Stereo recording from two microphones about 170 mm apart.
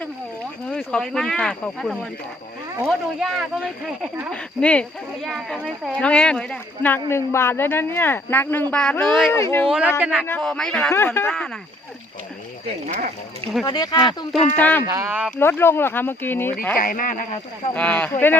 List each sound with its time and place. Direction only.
0.7 s speech: 5° left (ahead or behind)
9.3 s speech: 15° left (ahead or behind)
9.6 s speech: 5° right (ahead or behind)
10.2 s speech: 10° left (ahead or behind)
13.7 s speech: 25° left (ahead or behind)
14.5 s speech: 10° left (ahead or behind)
14.8 s speech: 15° right (ahead or behind)
15.4 s speech: 15° left (ahead or behind)
16.7 s speech: 55° left (ahead or behind)
17.7 s speech: 5° left (ahead or behind)